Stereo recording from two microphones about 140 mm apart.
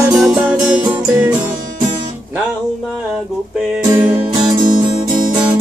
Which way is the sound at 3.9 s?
30° right (ahead or behind).